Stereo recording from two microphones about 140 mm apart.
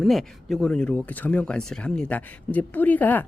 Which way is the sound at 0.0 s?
Centre (ahead or behind).